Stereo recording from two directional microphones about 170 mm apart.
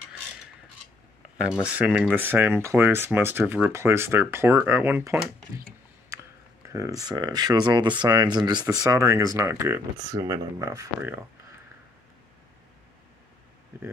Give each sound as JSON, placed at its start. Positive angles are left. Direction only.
{"t": 1.4, "sound": "speech", "side_deg": -5}